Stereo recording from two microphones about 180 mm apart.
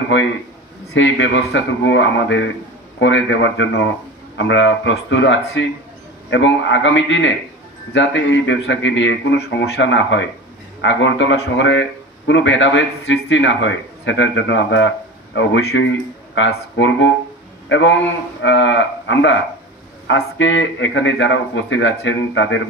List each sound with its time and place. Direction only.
0.1 s speech: 90° left